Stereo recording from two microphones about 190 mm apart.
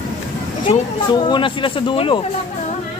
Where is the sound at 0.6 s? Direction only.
25° left (ahead or behind).